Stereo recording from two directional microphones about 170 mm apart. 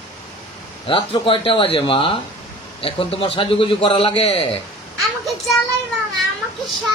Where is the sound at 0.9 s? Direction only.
30° left (ahead or behind).